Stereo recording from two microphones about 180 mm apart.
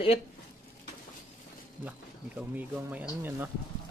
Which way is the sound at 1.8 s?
10° right (ahead or behind).